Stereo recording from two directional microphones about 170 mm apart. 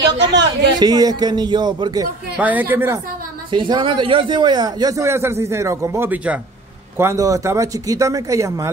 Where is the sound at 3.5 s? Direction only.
30° right (ahead or behind).